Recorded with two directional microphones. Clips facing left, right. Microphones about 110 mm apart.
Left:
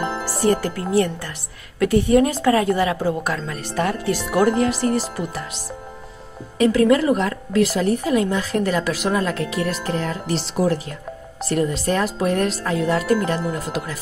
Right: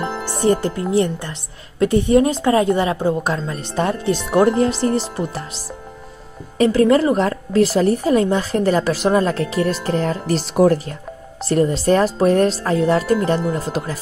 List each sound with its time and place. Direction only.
0.0 s music: 5° left (ahead or behind)
0.4 s a woman's voice: 25° right (ahead or behind)
6.6 s a woman's voice: 35° right (ahead or behind); by 10.7 s 55° right (ahead or behind)
10.7 s a woman's voice: 35° right (ahead or behind)